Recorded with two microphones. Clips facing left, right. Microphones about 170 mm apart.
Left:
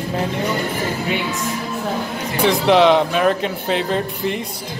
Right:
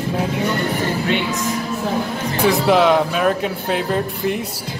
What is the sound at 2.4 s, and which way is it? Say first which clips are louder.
Speech: left 1 dB; 5° right (ahead or behind).